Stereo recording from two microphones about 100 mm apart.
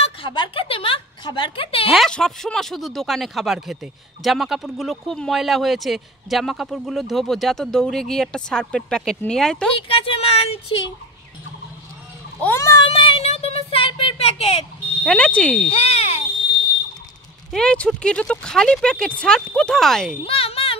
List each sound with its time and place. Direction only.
0.0 s a woman's voice: 55° left (ahead or behind)
1.9 s speech: 5° left (ahead or behind)
9.8 s speech: 70° left (ahead or behind)
12.5 s a child's voice: 30° left (ahead or behind)
12.8 s a sound: 65° left (ahead or behind)
15.0 s speech: 10° left (ahead or behind)
15.7 s speech: 90° left
17.5 s speech: 10° left (ahead or behind)
20.2 s speech: 70° left (ahead or behind)